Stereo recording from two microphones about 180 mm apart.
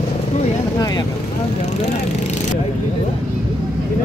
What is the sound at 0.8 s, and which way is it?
Speech, 20° left (ahead or behind).